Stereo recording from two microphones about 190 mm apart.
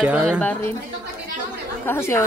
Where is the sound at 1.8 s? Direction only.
15° left (ahead or behind).